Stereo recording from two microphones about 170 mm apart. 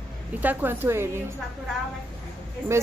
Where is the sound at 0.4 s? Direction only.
10° right (ahead or behind).